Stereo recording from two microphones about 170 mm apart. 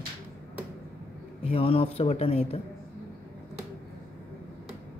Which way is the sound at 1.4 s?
35° left (ahead or behind).